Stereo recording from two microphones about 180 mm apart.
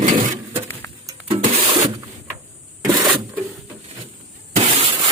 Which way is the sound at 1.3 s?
30° right (ahead or behind).